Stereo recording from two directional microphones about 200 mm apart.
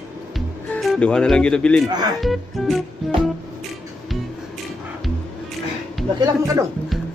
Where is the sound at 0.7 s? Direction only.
5° left (ahead or behind).